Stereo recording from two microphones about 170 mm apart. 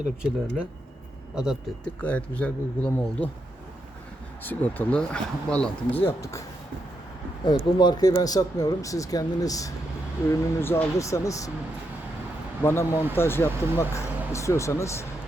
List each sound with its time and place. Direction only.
1.4 s speech: 5° right (ahead or behind)
2.0 s speech: 10° left (ahead or behind)
4.4 s speech: 10° left (ahead or behind)
7.4 s speech: 25° left (ahead or behind)
12.6 s speech: 15° left (ahead or behind)